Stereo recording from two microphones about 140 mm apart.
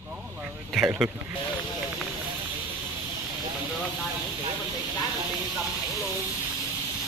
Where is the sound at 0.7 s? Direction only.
10° right (ahead or behind).